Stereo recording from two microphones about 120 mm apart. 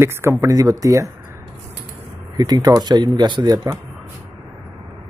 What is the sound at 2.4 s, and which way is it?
Speech, 35° right (ahead or behind).